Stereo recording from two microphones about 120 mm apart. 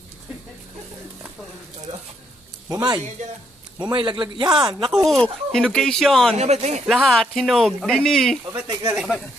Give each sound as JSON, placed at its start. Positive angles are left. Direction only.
{"t": 2.7, "sound": "speech", "side_deg": -35}
{"t": 3.2, "sound": "speech", "side_deg": -90}
{"t": 3.7, "sound": "speech", "side_deg": -40}
{"t": 4.9, "sound": "speech", "side_deg": 0}
{"t": 6.3, "sound": "speech", "side_deg": -65}
{"t": 6.9, "sound": "speech", "side_deg": 0}